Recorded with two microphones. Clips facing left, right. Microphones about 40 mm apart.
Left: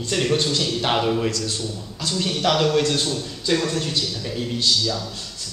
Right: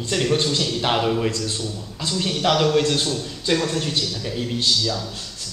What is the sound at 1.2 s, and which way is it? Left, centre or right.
Speech, centre.